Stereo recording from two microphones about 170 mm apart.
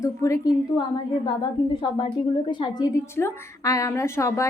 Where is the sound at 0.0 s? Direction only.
20° left (ahead or behind).